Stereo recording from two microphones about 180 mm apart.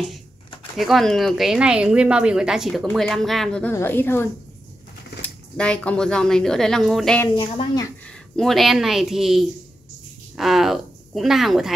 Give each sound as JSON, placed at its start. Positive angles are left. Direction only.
{"t": 0.7, "sound": "a woman's voice", "side_deg": 0}
{"t": 7.2, "sound": "speech", "side_deg": 25}
{"t": 8.4, "sound": "speech", "side_deg": 0}